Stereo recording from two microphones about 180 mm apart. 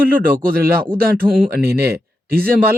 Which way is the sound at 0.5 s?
55° right (ahead or behind).